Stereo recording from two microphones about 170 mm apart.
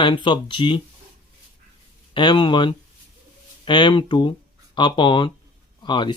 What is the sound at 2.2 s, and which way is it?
Speech, 25° left (ahead or behind).